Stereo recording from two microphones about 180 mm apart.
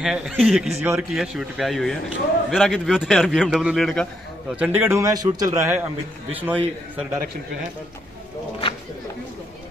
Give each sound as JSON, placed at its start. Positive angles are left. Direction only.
{"t": 0.0, "sound": "a man's voice", "side_deg": 0}
{"t": 4.6, "sound": "a man's voice", "side_deg": -10}